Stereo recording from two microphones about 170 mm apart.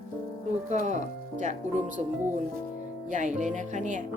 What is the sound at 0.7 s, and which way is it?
Speech, 45° right (ahead or behind).